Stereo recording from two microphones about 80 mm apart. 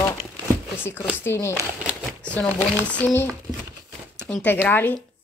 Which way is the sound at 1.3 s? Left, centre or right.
Left.